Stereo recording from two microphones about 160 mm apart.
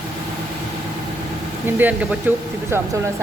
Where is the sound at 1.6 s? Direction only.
10° right (ahead or behind).